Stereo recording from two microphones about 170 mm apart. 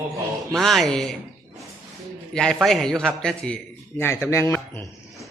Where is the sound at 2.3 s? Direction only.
5° left (ahead or behind).